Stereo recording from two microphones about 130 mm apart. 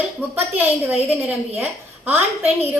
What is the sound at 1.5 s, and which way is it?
Speech, 15° right (ahead or behind).